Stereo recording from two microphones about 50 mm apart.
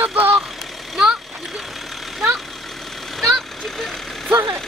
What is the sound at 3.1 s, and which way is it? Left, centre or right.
Vehicle, centre.